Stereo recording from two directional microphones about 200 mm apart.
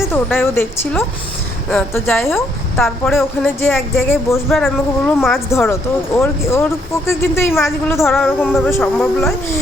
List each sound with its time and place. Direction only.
0.1 s speech: 10° left (ahead or behind)
2.7 s speech: centre (ahead or behind)
4.4 s speech: centre (ahead or behind)
5.5 s speech: 15° left (ahead or behind)
8.0 s speech: centre (ahead or behind)
8.4 s speech: 10° left (ahead or behind)